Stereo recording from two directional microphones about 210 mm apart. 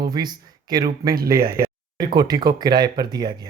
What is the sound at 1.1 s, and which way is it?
Speech, 45° right (ahead or behind).